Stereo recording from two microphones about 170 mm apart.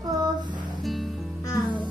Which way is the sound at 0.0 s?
20° right (ahead or behind).